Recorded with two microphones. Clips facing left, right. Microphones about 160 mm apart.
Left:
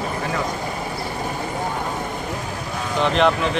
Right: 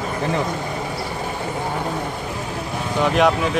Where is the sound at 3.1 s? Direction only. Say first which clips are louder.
Right 1 dB; 10° right (ahead or behind).